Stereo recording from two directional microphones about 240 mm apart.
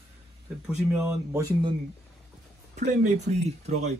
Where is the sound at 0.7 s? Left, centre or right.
Centre.